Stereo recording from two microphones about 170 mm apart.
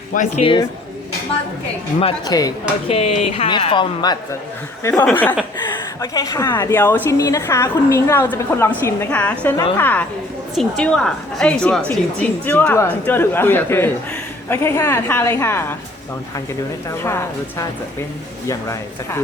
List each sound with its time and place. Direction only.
0.1 s speech: 50° left (ahead or behind)
2.2 s speech: 20° left (ahead or behind)
2.9 s a man's voice: 35° left (ahead or behind)
4.8 s a woman's voice: 10° left (ahead or behind)
5.6 s a woman's voice: 20° left (ahead or behind)
17.0 s a woman's voice: 15° left (ahead or behind)
18.4 s speech: 20° left (ahead or behind)